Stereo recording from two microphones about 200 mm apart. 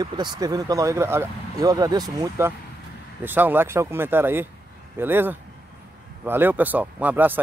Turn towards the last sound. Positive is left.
turn(degrees=-10)  # may be behind; listen again after turning